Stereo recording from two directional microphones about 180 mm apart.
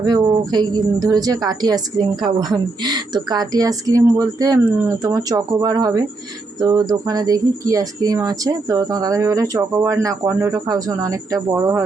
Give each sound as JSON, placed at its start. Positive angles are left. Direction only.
{"t": 0.0, "sound": "speech", "side_deg": -20}